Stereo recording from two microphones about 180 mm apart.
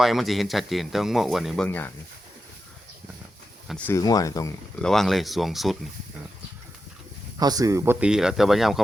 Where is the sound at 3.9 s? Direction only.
20° left (ahead or behind).